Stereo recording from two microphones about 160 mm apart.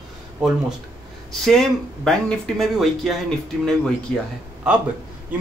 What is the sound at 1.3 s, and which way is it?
Speech, centre (ahead or behind).